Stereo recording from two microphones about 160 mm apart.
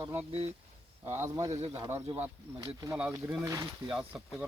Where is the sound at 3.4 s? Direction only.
20° right (ahead or behind).